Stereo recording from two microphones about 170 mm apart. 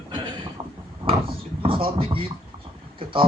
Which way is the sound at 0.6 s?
25° right (ahead or behind).